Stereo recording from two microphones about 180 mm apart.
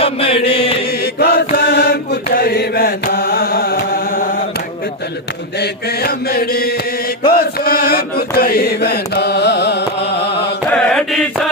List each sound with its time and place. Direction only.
0.0 s chant: 30° left (ahead or behind)
0.9 s chant: 60° left (ahead or behind)
1.5 s mantra: 60° left (ahead or behind)
5.5 s mantra: 60° left (ahead or behind)
10.7 s mantra: 5° left (ahead or behind)